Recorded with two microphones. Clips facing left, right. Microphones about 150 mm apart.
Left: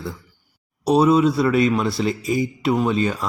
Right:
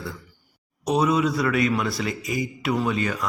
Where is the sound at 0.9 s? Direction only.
30° left (ahead or behind).